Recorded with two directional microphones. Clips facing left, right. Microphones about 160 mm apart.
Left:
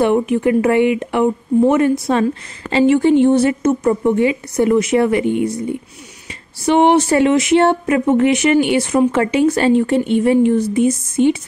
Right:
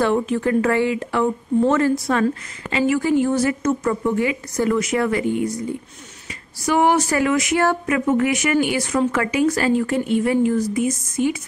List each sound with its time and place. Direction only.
0.0 s a woman's voice: 15° left (ahead or behind)